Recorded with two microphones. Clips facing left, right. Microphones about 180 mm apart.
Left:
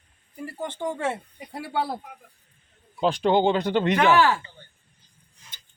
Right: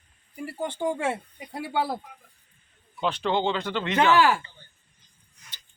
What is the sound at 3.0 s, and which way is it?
Speech, 40° left (ahead or behind).